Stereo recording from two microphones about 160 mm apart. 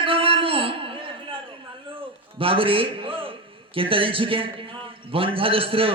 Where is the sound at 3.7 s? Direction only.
35° right (ahead or behind).